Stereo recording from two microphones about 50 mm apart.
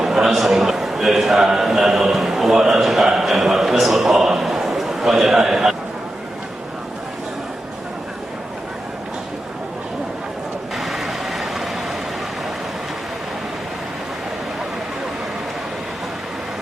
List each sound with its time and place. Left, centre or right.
0.0 s a sound: centre
0.3 s a man's voice: centre
10.8 s vehicle: centre